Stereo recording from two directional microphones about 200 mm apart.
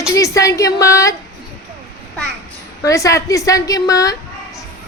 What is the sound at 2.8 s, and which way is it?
A woman's voice, 15° left (ahead or behind).